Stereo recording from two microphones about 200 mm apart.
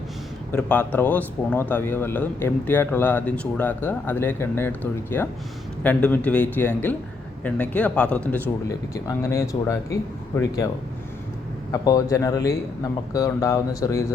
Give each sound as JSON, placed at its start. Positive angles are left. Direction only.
{"t": 0.5, "sound": "a man's voice", "side_deg": 5}
{"t": 11.7, "sound": "a man's voice", "side_deg": 15}